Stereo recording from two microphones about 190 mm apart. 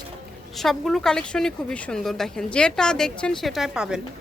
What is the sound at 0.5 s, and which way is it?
A woman's voice, centre (ahead or behind).